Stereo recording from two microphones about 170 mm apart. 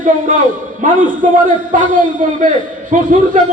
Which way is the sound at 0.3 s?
50° right (ahead or behind).